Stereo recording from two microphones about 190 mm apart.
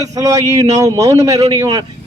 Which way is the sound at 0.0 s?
20° right (ahead or behind).